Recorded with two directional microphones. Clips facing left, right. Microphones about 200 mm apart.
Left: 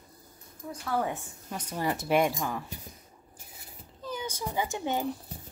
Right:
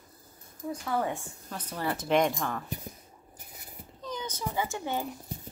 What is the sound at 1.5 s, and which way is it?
Speech, 10° left (ahead or behind).